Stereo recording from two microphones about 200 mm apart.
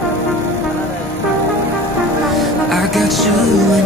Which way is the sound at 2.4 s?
Centre (ahead or behind).